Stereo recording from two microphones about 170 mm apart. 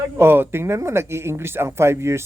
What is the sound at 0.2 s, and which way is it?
Speech, 15° right (ahead or behind).